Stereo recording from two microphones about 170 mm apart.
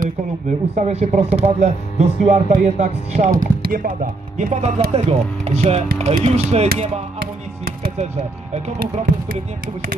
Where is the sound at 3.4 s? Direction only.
55° right (ahead or behind).